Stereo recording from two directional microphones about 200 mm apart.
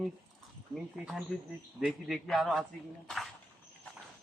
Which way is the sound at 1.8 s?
Centre (ahead or behind).